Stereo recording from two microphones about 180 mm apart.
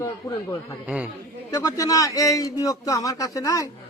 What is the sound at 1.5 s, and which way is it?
A man's voice, 20° left (ahead or behind).